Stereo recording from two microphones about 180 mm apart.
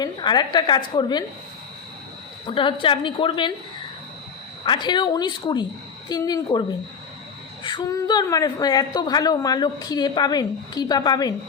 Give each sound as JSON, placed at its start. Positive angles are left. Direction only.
{"t": 0.0, "sound": "a woman's voice", "side_deg": 25}
{"t": 2.5, "sound": "a woman's voice", "side_deg": 30}
{"t": 4.6, "sound": "a woman's voice", "side_deg": 25}